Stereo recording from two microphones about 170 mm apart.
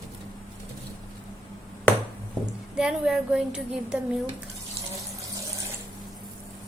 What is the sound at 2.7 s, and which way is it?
Speech, 5° right (ahead or behind).